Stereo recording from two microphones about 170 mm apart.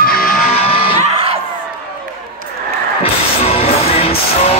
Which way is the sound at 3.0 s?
35° left (ahead or behind).